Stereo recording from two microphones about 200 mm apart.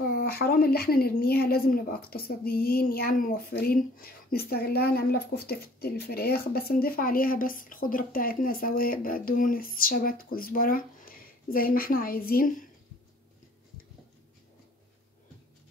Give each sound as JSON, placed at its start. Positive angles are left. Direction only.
{"t": 0.1, "sound": "a woman's voice", "side_deg": 50}